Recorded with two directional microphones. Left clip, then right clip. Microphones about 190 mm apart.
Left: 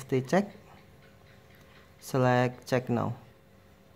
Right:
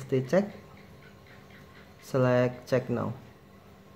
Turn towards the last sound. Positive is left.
turn(degrees=30)  # may be behind; listen again after turning